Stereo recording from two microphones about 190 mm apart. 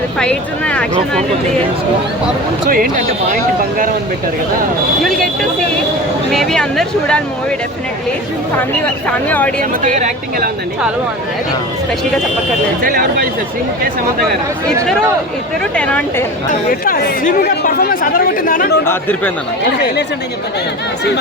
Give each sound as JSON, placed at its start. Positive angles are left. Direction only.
{"t": 0.2, "sound": "speech", "side_deg": 5}
{"t": 2.6, "sound": "a woman's voice", "side_deg": -45}
{"t": 6.3, "sound": "speech", "side_deg": 0}
{"t": 9.0, "sound": "speech", "side_deg": 10}
{"t": 9.6, "sound": "a woman's voice", "side_deg": -45}
{"t": 12.8, "sound": "a woman's voice", "side_deg": -50}
{"t": 15.7, "sound": "speech", "side_deg": 5}
{"t": 16.8, "sound": "speech", "side_deg": 50}
{"t": 18.9, "sound": "speech", "side_deg": 10}